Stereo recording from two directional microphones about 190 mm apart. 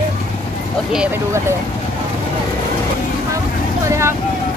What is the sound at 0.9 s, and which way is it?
Speech, 5° right (ahead or behind).